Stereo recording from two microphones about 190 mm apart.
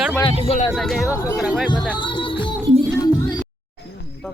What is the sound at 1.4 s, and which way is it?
Speech, centre (ahead or behind).